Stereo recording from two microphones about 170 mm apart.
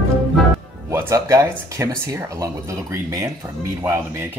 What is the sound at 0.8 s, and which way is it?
Speech, 15° right (ahead or behind).